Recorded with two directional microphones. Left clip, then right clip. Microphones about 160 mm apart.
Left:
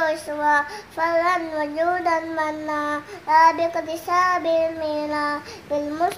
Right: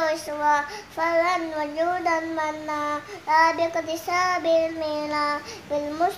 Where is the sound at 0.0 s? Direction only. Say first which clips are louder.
Left 2 dB; centre (ahead or behind).